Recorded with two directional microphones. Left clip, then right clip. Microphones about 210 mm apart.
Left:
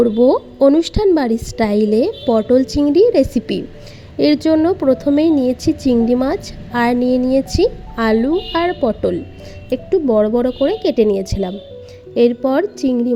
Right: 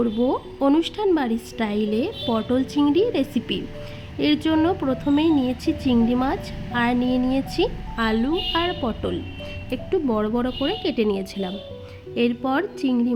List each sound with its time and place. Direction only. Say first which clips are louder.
0.0 s a woman's voice: left 10 dB; 20° left (ahead or behind)